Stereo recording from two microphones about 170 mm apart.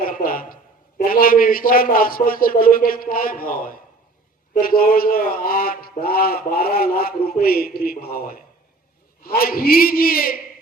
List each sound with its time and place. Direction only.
0.0 s a man's voice: 55° left (ahead or behind)